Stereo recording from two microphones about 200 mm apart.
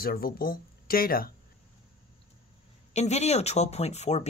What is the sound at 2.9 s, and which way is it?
Speech, 35° left (ahead or behind).